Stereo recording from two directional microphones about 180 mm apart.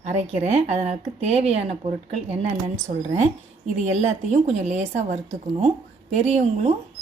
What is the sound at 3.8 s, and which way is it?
A woman's voice, 40° right (ahead or behind).